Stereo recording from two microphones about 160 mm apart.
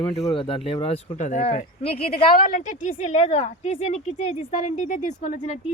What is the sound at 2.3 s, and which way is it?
A woman's voice, 60° left (ahead or behind).